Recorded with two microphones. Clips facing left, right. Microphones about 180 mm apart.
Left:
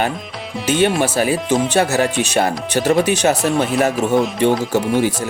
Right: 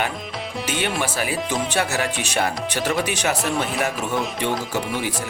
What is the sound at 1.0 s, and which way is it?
Speech, 40° left (ahead or behind).